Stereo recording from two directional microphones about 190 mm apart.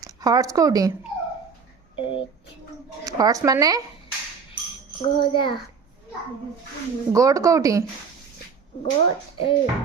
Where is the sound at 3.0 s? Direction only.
20° right (ahead or behind).